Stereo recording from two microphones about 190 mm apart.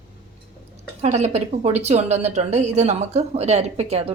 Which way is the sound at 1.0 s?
35° right (ahead or behind).